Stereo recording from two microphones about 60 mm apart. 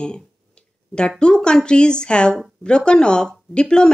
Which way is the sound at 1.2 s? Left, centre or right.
Centre.